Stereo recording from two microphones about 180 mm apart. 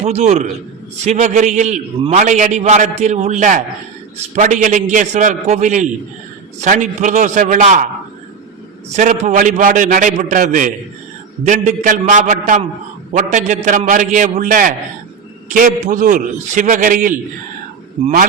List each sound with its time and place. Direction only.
0.0 s a man's voice: 40° right (ahead or behind)
9.0 s a man's voice: 45° right (ahead or behind)